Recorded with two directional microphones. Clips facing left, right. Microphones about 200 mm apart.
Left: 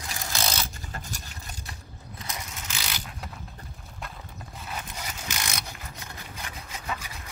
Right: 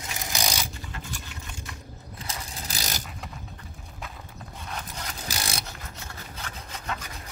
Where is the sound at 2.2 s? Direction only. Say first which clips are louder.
Right 1 dB; 35° right (ahead or behind).